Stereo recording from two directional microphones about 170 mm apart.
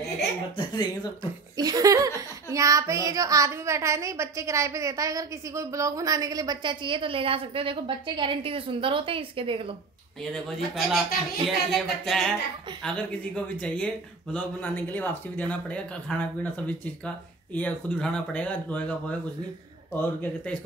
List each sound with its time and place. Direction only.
0.6 s speech: 25° left (ahead or behind)
1.6 s a child's voice: 20° right (ahead or behind)
10.3 s speech: centre (ahead or behind)